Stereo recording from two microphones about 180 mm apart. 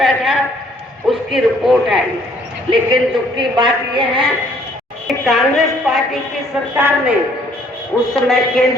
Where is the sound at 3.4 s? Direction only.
25° right (ahead or behind).